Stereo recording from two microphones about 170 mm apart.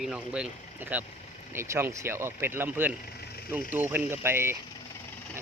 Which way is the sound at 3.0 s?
70° left (ahead or behind).